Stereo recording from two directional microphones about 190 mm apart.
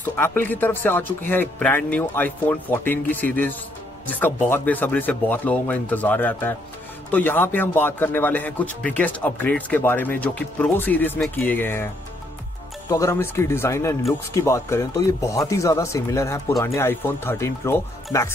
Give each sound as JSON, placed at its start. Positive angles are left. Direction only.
{"t": 0.0, "sound": "speech", "side_deg": 10}
{"t": 12.9, "sound": "speech", "side_deg": 15}